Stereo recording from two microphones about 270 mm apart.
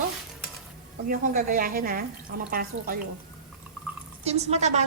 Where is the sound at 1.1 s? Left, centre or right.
Right.